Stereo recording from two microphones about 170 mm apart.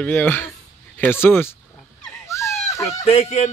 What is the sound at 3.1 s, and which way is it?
Music, 40° left (ahead or behind).